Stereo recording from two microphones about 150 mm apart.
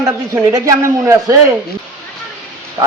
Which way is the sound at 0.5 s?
20° right (ahead or behind).